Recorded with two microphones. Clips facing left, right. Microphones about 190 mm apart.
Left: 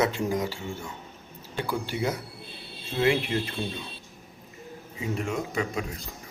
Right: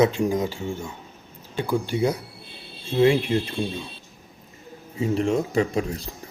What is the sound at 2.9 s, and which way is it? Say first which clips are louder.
Speech: right 6 dB; 30° right (ahead or behind).